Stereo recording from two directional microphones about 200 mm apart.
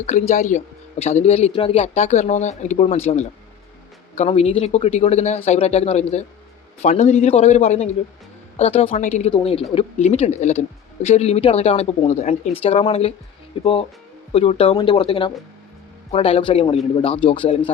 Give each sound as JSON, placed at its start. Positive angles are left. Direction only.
{"t": 0.0, "sound": "speech", "side_deg": 35}